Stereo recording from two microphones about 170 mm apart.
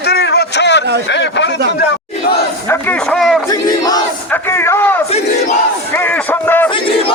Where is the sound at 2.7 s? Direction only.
10° left (ahead or behind).